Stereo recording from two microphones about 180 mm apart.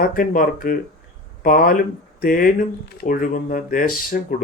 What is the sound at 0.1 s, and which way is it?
Speech, 50° left (ahead or behind).